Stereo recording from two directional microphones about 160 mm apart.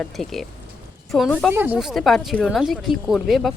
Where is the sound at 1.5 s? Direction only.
15° right (ahead or behind).